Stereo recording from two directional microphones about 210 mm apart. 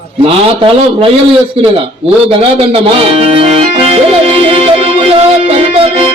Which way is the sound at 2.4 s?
25° right (ahead or behind).